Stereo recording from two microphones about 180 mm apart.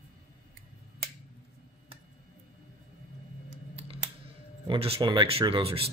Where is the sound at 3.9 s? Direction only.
30° right (ahead or behind).